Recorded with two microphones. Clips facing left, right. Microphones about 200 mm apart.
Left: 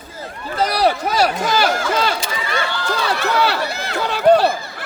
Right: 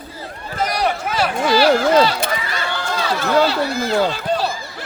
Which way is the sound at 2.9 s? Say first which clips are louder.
Right 2 dB; 65° left (ahead or behind).